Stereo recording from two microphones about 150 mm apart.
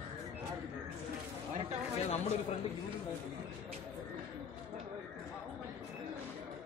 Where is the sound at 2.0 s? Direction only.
45° left (ahead or behind).